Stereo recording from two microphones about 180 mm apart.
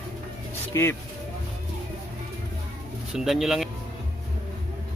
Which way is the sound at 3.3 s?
Centre (ahead or behind).